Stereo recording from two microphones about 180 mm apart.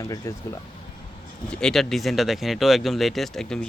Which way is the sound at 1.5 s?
5° left (ahead or behind).